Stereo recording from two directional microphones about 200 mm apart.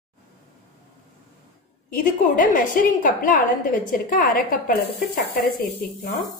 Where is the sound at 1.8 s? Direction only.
45° left (ahead or behind).